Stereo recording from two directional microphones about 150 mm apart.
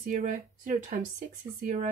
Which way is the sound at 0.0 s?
60° right (ahead or behind).